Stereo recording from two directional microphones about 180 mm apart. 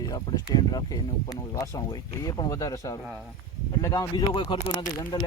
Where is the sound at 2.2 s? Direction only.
20° left (ahead or behind).